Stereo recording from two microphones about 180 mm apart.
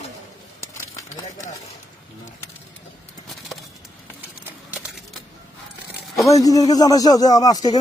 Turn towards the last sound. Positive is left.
turn(degrees=20)  # may be behind; listen again after turning